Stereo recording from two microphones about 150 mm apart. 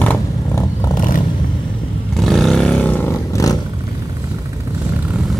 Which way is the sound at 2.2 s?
Centre (ahead or behind).